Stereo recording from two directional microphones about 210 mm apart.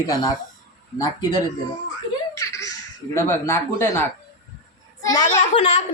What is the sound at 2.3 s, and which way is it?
A child's voice, 15° left (ahead or behind).